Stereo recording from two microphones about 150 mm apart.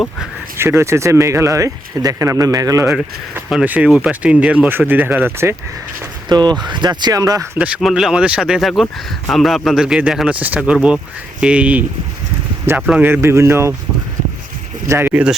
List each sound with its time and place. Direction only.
0.5 s speech: 15° right (ahead or behind)
6.2 s speech: 30° right (ahead or behind)
7.6 s speech: centre (ahead or behind)
12.9 s speech: 15° right (ahead or behind)
14.8 s speech: 15° right (ahead or behind)